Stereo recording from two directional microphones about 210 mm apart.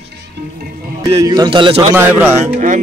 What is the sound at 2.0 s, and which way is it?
Speech, 10° right (ahead or behind).